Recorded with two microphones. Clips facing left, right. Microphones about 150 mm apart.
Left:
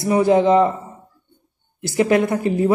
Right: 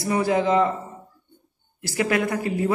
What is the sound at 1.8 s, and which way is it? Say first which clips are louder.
Speech: left 6 dB; 25° left (ahead or behind).